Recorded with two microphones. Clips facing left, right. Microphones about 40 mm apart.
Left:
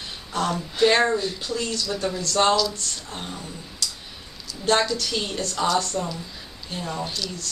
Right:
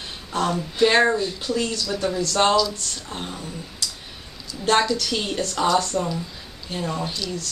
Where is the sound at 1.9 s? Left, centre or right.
Centre.